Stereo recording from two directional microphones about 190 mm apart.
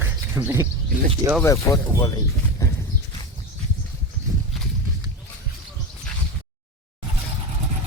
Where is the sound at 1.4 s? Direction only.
15° left (ahead or behind).